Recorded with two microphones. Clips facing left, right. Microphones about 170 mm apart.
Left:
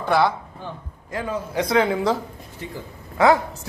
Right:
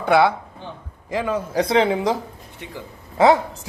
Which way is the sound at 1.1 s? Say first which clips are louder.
Right 4 dB; 90° right.